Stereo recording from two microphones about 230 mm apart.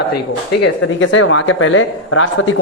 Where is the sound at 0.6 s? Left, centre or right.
Left.